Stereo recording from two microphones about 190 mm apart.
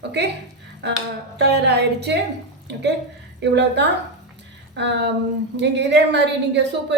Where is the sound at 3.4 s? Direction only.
65° right (ahead or behind).